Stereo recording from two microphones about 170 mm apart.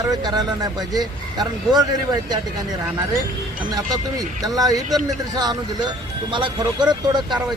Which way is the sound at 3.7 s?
20° right (ahead or behind).